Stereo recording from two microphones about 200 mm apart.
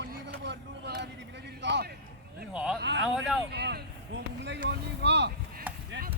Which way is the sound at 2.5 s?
5° right (ahead or behind).